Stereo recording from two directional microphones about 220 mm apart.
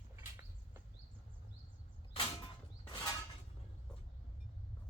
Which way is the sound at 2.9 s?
15° left (ahead or behind).